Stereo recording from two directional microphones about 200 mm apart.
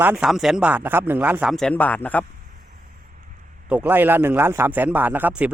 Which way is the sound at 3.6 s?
5° right (ahead or behind).